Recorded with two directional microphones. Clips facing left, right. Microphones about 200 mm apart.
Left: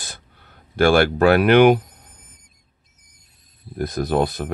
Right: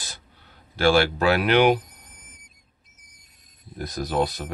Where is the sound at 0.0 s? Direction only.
50° left (ahead or behind).